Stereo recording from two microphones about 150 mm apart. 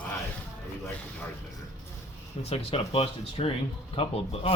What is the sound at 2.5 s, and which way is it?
Speech, 40° left (ahead or behind).